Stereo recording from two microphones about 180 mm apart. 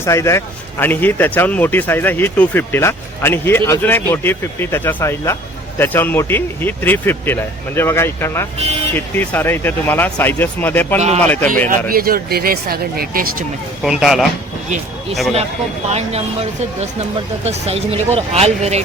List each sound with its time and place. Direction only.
0.0 s a man's voice: 15° left (ahead or behind)
11.9 s speech: 55° right (ahead or behind)
13.8 s speech: centre (ahead or behind)
15.9 s speech: 35° right (ahead or behind)